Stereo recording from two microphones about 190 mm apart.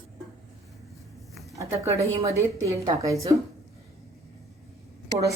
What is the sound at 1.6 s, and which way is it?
A woman's voice, 15° right (ahead or behind).